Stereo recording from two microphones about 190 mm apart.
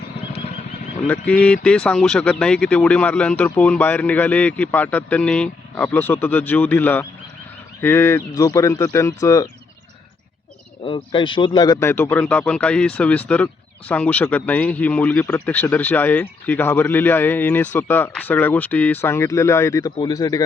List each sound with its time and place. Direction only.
1.0 s speech: 5° left (ahead or behind)
10.8 s speech: 25° left (ahead or behind)